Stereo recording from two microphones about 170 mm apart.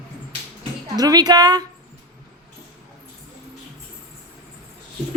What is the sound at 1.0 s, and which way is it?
Speech, 25° right (ahead or behind).